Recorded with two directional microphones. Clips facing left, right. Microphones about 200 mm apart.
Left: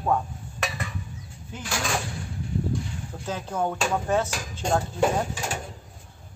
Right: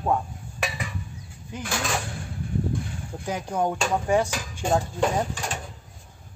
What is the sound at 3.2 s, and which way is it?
Speech, 15° right (ahead or behind).